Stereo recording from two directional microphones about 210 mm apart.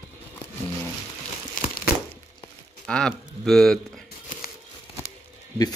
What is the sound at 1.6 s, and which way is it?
Crumpling, 40° left (ahead or behind).